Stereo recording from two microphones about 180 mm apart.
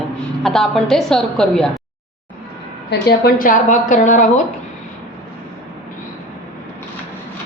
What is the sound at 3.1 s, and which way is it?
A woman's voice, 55° left (ahead or behind).